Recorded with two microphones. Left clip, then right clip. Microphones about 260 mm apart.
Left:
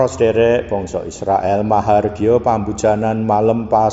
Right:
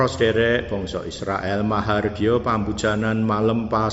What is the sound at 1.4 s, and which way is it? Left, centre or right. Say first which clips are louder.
A man's voice: left 8 dB; centre.